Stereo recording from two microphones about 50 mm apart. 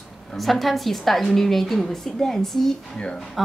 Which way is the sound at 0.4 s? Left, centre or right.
Centre.